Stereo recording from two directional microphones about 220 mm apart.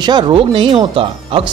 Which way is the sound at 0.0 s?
20° right (ahead or behind).